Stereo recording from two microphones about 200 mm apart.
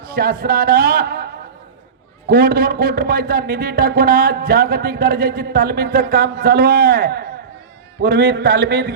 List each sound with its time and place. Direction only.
0.0 s a man's voice: 50° right (ahead or behind)